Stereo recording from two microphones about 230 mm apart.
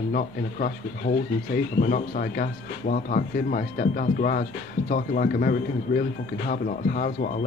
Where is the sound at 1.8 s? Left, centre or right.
Left.